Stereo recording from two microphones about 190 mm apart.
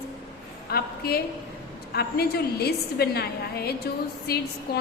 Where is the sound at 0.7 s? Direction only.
55° left (ahead or behind).